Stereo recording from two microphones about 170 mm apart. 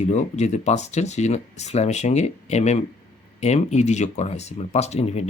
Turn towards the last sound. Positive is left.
turn(degrees=40)  # may be behind; listen again after turning